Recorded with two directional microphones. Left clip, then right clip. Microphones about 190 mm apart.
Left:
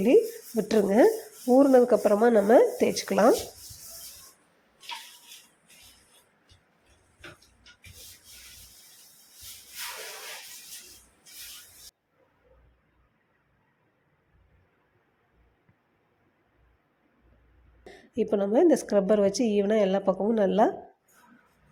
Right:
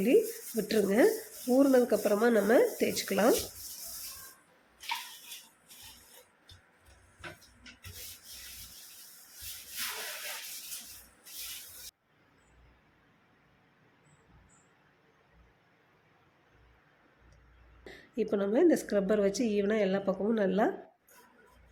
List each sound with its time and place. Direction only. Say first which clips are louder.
0.0 s a woman's voice: left 5 dB; 15° left (ahead or behind)
17.8 s a woman's voice: left 5 dB; 10° left (ahead or behind)